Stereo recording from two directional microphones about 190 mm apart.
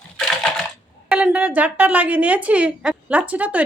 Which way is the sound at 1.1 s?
5° right (ahead or behind).